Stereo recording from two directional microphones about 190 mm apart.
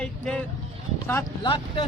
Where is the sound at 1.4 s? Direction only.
25° left (ahead or behind).